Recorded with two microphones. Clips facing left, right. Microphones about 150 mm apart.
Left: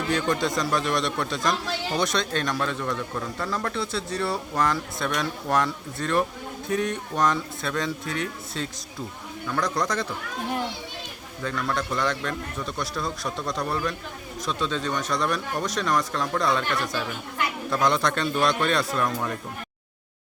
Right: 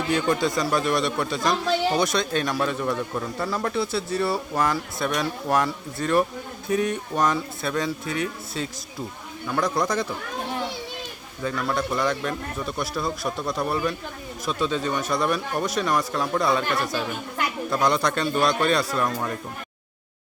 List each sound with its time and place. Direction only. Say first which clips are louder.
0.1 s a man's voice: right 2 dB; 5° right (ahead or behind)
11.4 s a man's voice: right 2 dB; 5° right (ahead or behind)